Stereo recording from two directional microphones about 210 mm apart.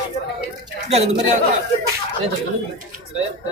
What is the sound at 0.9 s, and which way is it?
Speech, 30° right (ahead or behind).